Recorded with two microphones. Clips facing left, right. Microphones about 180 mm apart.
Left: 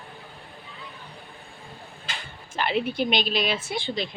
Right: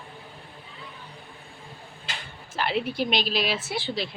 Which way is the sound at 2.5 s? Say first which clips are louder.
Left 1 dB; centre (ahead or behind).